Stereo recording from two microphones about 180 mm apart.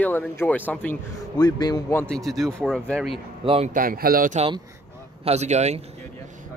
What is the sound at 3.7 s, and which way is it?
Speech, 55° right (ahead or behind).